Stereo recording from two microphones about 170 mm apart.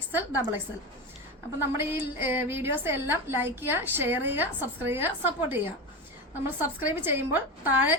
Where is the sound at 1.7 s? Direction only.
10° right (ahead or behind).